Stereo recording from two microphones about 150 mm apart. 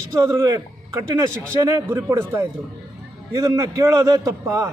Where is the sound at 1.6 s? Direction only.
20° right (ahead or behind).